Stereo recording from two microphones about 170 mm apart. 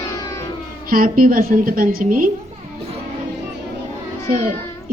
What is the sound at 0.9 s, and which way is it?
A woman's voice, 55° right (ahead or behind).